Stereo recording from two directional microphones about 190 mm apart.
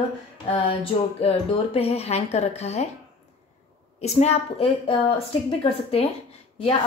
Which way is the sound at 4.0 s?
35° left (ahead or behind).